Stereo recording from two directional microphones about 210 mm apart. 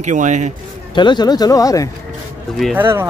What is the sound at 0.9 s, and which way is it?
Speech, 20° left (ahead or behind).